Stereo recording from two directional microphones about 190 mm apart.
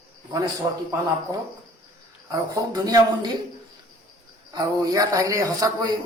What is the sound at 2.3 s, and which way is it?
A man's voice, 20° right (ahead or behind).